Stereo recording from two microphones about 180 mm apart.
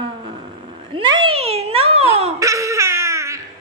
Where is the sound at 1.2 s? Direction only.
35° right (ahead or behind).